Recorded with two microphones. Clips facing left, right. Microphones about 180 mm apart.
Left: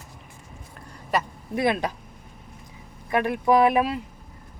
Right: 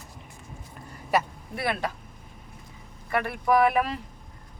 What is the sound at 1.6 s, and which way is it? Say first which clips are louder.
Speech: left 5 dB; 20° left (ahead or behind).